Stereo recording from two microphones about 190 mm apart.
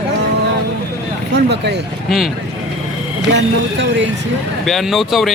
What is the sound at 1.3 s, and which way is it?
Speech, 65° right (ahead or behind).